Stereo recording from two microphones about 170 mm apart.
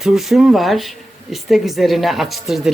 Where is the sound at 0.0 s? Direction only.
Centre (ahead or behind).